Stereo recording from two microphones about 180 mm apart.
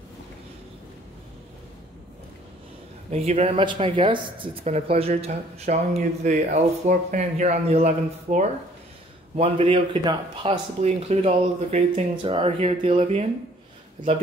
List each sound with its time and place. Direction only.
3.1 s speech: 35° right (ahead or behind)